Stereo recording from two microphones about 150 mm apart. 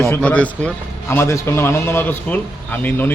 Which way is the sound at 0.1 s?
10° left (ahead or behind).